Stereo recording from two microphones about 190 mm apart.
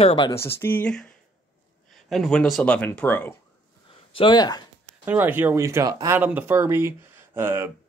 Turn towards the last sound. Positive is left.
turn(degrees=-10)  # may be behind; listen again after turning